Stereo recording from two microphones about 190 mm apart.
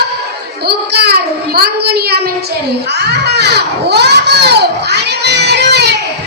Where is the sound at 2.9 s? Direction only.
60° right (ahead or behind).